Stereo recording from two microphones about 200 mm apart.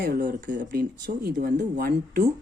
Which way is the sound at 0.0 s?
45° right (ahead or behind).